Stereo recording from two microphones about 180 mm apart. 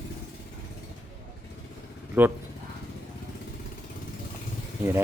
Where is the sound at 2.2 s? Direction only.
10° right (ahead or behind).